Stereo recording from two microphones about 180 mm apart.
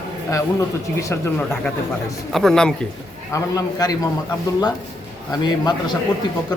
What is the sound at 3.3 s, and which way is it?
Speech, 20° left (ahead or behind).